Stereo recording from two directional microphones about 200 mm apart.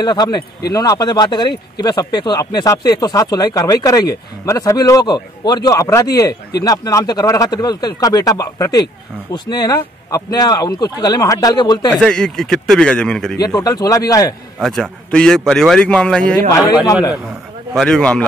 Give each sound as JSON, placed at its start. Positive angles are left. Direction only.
{"t": 0.0, "sound": "speech", "side_deg": 20}
{"t": 11.9, "sound": "a man's voice", "side_deg": 5}
{"t": 13.4, "sound": "speech", "side_deg": 20}
{"t": 14.6, "sound": "a man's voice", "side_deg": 0}
{"t": 16.8, "sound": "a man's voice", "side_deg": 20}
{"t": 17.7, "sound": "a man's voice", "side_deg": 5}